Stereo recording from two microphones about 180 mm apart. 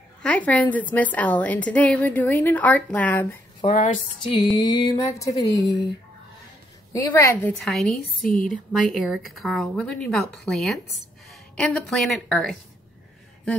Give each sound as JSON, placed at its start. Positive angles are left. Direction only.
{"t": 0.2, "sound": "a woman's voice", "side_deg": 10}
{"t": 3.6, "sound": "speech", "side_deg": 30}
{"t": 6.9, "sound": "a woman's voice", "side_deg": 15}
{"t": 7.6, "sound": "speech", "side_deg": 0}
{"t": 8.3, "sound": "speech", "side_deg": 45}
{"t": 8.9, "sound": "speech", "side_deg": 0}